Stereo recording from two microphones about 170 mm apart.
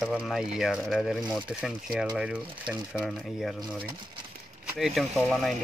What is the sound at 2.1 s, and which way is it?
Speech, 5° right (ahead or behind).